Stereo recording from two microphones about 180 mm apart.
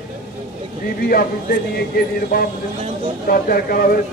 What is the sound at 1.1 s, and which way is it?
A man's voice, 55° left (ahead or behind).